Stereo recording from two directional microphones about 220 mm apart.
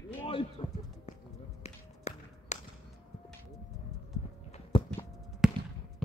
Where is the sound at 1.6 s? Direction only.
30° left (ahead or behind).